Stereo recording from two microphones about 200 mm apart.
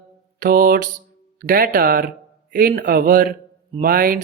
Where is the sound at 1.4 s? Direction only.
50° right (ahead or behind).